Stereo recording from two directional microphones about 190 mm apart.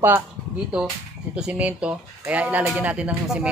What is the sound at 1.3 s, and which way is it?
Speech, 5° right (ahead or behind).